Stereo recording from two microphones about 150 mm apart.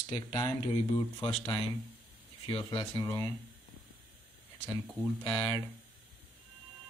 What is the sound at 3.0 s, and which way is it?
Speech, 25° left (ahead or behind).